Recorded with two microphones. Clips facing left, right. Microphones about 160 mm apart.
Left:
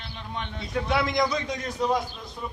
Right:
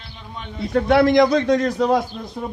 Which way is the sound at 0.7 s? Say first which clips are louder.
Right 11 dB; 60° right (ahead or behind).